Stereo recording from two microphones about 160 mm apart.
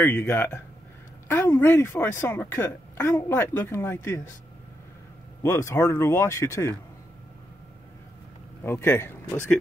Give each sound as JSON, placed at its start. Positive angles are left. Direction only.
{"t": 0.0, "sound": "a woman's voice", "side_deg": 10}
{"t": 5.4, "sound": "a woman's voice", "side_deg": 15}
{"t": 8.6, "sound": "a woman's voice", "side_deg": 15}